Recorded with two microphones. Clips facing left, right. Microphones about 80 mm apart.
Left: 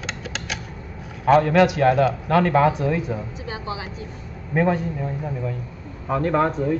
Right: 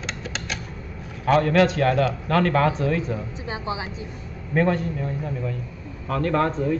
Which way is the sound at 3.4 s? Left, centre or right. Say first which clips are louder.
Right 1 dB; right.